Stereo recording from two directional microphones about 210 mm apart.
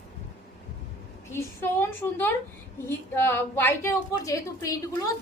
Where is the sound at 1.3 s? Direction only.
10° left (ahead or behind).